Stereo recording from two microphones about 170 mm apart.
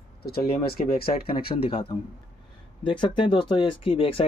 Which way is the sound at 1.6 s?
30° left (ahead or behind).